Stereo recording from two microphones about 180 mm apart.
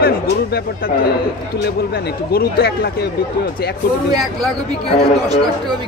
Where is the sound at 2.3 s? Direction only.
60° left (ahead or behind).